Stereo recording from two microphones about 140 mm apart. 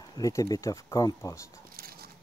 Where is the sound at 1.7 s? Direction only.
90° right.